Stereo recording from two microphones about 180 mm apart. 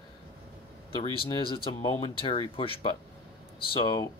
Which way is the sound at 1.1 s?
30° left (ahead or behind).